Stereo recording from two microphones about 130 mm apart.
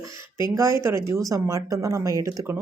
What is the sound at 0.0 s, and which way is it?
A woman's voice, 20° right (ahead or behind).